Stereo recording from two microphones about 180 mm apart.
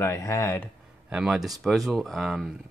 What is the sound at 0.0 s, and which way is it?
Speech, 15° left (ahead or behind).